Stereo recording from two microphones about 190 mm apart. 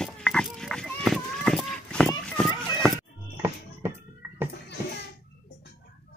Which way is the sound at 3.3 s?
10° right (ahead or behind).